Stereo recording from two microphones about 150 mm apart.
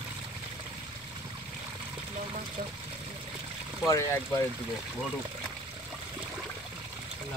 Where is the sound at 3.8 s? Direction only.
20° left (ahead or behind).